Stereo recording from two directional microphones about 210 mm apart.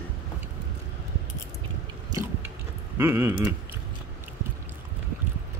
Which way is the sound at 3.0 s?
10° right (ahead or behind).